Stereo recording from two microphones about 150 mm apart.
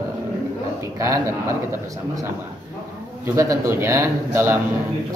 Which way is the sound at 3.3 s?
20° right (ahead or behind).